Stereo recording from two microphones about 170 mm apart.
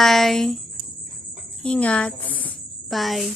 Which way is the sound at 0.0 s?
Centre (ahead or behind).